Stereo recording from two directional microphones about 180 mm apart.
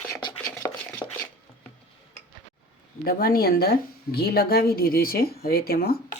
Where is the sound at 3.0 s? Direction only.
55° left (ahead or behind).